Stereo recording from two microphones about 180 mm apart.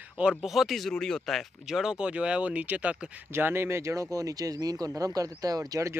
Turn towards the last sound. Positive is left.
turn(degrees=-20)  # may be behind; listen again after turning